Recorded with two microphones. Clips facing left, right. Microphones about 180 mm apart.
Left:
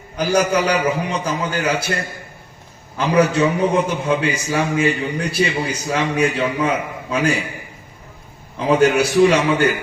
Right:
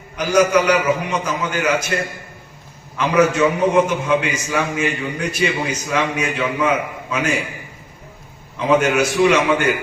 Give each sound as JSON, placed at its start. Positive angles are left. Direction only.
{"t": 0.2, "sound": "a man's voice", "side_deg": 35}
{"t": 3.0, "sound": "a man's voice", "side_deg": 35}
{"t": 8.5, "sound": "a man's voice", "side_deg": 35}